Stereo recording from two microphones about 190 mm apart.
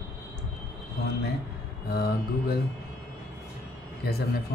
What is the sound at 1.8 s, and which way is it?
Speech, 60° left (ahead or behind).